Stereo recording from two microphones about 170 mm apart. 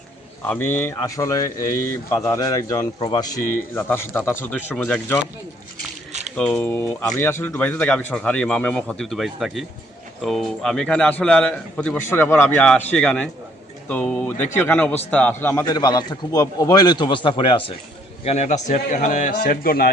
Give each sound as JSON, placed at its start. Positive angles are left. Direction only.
{"t": 0.4, "sound": "a man's voice", "side_deg": 10}
{"t": 6.3, "sound": "a man's voice", "side_deg": 5}
{"t": 15.6, "sound": "a man's voice", "side_deg": 25}
{"t": 18.3, "sound": "speech", "side_deg": 45}